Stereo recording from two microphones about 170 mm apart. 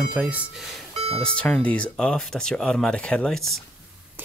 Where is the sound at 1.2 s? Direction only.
5° left (ahead or behind).